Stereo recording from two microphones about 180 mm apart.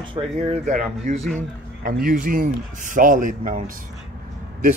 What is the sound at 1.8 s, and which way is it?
Speech, 50° right (ahead or behind).